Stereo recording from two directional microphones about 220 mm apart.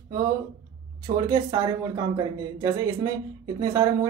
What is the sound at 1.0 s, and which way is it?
Speech, 20° right (ahead or behind).